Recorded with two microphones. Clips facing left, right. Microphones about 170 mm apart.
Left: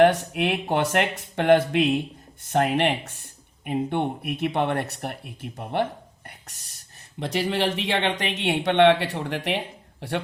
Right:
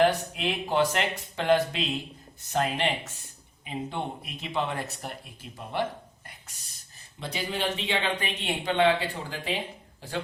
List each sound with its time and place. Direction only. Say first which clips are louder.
0.0 s speech: left 5 dB; 65° left (ahead or behind)
7.2 s speech: left 7 dB; 70° left (ahead or behind)